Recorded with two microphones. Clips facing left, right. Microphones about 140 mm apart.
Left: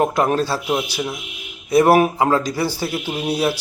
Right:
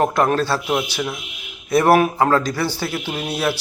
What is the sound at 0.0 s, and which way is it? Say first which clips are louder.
Speech: even; 10° left (ahead or behind).